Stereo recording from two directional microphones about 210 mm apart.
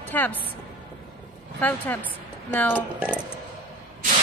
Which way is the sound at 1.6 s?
10° left (ahead or behind).